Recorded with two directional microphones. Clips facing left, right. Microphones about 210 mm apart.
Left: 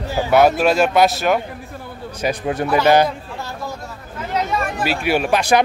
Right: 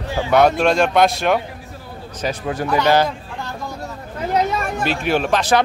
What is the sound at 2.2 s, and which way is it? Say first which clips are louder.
Speech: left 2 dB; 20° left (ahead or behind).